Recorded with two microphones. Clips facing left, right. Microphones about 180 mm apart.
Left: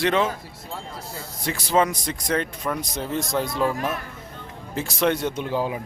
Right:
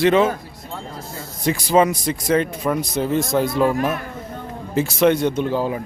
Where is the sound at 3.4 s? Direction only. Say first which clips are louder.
Right 6 dB; 50° right (ahead or behind).